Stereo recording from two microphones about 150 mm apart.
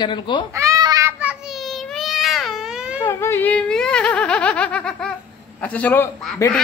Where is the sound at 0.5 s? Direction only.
20° right (ahead or behind).